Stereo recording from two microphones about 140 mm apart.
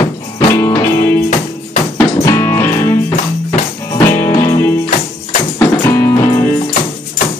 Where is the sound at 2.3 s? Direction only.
20° left (ahead or behind).